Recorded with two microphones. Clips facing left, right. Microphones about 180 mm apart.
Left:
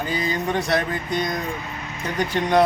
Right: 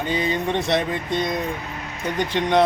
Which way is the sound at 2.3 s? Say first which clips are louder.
Even; 5° left (ahead or behind).